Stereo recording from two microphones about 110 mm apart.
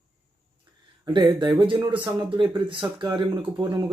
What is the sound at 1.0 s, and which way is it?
Speech, 45° right (ahead or behind).